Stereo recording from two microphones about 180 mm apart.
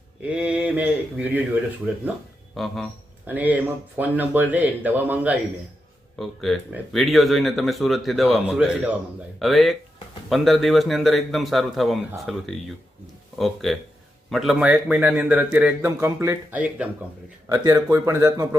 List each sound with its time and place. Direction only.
0.2 s a man's voice: 5° right (ahead or behind)
2.6 s a man's voice: centre (ahead or behind)
6.1 s a man's voice: centre (ahead or behind); by 18.4 s 15° right (ahead or behind)